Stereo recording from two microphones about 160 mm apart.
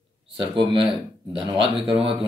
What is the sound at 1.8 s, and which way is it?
Speech, 35° right (ahead or behind).